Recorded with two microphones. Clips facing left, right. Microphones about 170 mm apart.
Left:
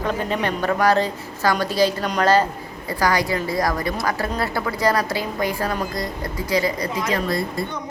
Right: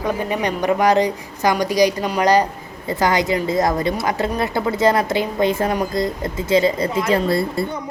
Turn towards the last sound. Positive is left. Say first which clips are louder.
# right 5 dB
turn(degrees=-30)  # may be behind; listen again after turning